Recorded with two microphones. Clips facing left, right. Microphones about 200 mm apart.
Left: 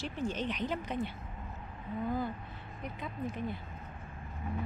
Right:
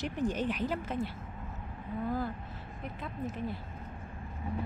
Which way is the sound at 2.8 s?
Centre (ahead or behind).